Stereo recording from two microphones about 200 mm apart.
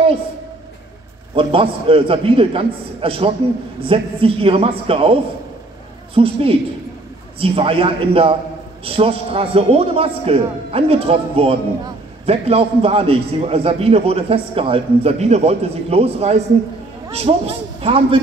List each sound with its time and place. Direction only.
1.3 s a man's voice: 25° right (ahead or behind)
6.1 s a man's voice: 30° right (ahead or behind)